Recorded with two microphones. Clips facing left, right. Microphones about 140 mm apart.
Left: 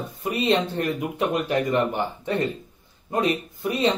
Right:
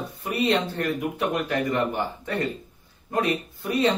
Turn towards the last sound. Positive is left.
turn(degrees=20)  # may be behind; listen again after turning